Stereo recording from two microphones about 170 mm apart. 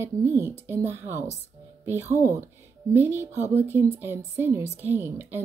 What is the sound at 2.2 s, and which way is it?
Speech, 15° right (ahead or behind).